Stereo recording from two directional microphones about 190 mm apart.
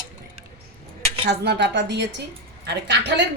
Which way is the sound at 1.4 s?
65° right (ahead or behind).